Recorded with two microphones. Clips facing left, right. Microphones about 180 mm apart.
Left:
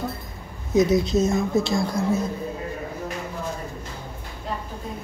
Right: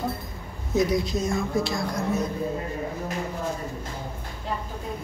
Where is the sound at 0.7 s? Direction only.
25° left (ahead or behind).